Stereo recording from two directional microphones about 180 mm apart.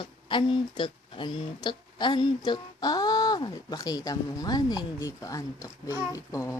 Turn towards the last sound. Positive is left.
turn(degrees=15)  # may be behind; listen again after turning